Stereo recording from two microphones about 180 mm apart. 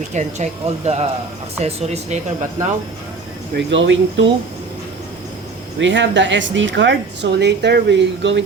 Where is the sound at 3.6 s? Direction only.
85° right.